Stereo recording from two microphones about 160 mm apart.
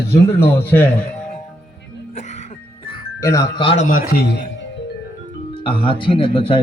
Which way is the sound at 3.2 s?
20° left (ahead or behind).